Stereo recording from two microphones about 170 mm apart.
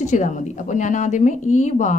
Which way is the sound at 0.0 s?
45° left (ahead or behind).